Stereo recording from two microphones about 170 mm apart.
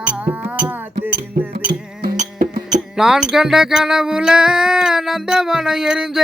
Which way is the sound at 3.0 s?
5° right (ahead or behind).